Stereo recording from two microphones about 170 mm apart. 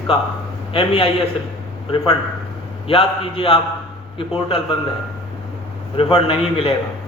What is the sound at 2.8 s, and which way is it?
A man's voice, 35° left (ahead or behind).